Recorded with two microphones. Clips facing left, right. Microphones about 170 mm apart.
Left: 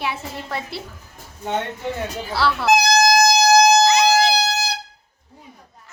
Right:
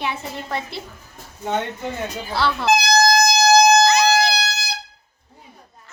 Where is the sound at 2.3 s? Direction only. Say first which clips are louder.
Left 1 dB; 5° left (ahead or behind).